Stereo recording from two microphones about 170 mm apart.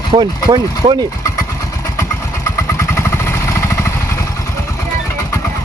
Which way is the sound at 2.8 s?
15° left (ahead or behind).